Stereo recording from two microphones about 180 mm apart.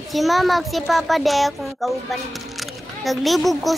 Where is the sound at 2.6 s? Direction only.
Centre (ahead or behind).